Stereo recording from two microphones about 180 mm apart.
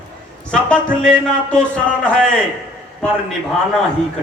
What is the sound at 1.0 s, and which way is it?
A man's voice, 5° left (ahead or behind).